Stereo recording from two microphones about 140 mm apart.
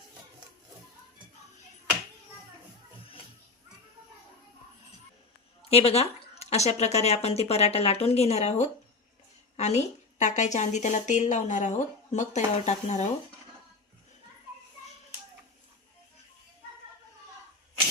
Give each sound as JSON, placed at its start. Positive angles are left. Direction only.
{"t": 5.6, "sound": "a woman's voice", "side_deg": 45}